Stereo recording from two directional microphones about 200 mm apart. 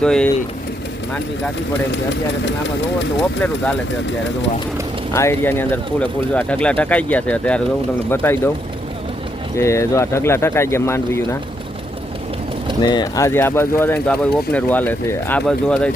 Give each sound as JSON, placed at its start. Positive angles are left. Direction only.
{"t": 0.0, "sound": "speech", "side_deg": 5}
{"t": 2.4, "sound": "speech", "side_deg": 65}
{"t": 5.1, "sound": "speech", "side_deg": 15}
{"t": 9.6, "sound": "speech", "side_deg": 15}
{"t": 12.8, "sound": "speech", "side_deg": 20}